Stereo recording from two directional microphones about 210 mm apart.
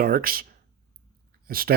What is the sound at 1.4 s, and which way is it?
Speech, 45° right (ahead or behind).